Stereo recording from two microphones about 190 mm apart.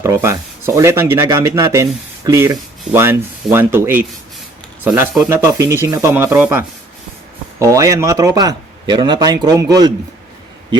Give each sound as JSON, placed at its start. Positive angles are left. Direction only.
{"t": 0.0, "sound": "a man's voice", "side_deg": -15}